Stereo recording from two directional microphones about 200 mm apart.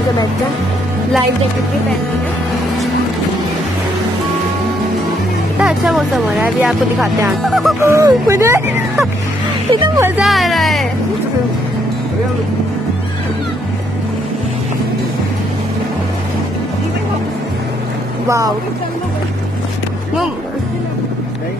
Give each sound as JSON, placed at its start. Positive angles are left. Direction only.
{"t": 5.6, "sound": "speech", "side_deg": 0}
{"t": 7.8, "sound": "speech", "side_deg": -15}
{"t": 10.2, "sound": "music", "side_deg": 0}